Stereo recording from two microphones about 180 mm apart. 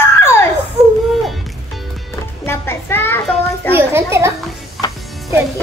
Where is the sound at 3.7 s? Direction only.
15° right (ahead or behind).